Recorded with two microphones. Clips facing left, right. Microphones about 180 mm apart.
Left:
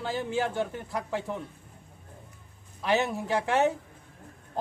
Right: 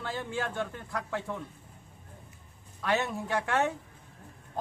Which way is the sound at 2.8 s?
20° left (ahead or behind).